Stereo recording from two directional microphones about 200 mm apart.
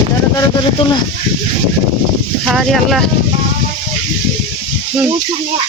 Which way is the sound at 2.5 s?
Centre (ahead or behind).